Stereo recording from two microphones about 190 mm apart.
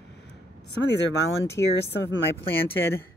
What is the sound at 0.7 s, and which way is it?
Speech, 65° left (ahead or behind).